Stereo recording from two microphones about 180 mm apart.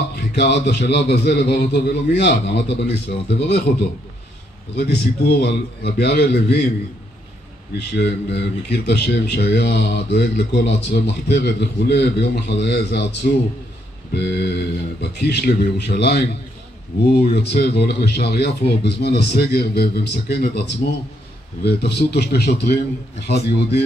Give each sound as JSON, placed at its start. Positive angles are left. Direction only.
{"t": 0.3, "sound": "speech", "side_deg": 70}
{"t": 5.4, "sound": "speech", "side_deg": 65}
{"t": 7.8, "sound": "speech", "side_deg": 70}
{"t": 14.1, "sound": "speech", "side_deg": 70}